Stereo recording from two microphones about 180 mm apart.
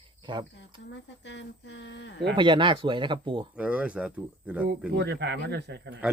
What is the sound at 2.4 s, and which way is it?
Speech, 25° right (ahead or behind).